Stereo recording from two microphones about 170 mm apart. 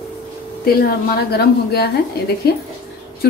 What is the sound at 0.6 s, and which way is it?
A woman's voice, 65° left (ahead or behind).